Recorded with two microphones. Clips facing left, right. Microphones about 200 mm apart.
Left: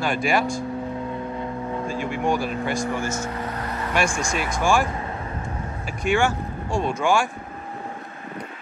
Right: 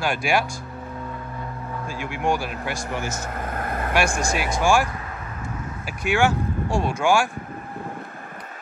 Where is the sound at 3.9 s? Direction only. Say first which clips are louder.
Right 1 dB; 5° right (ahead or behind).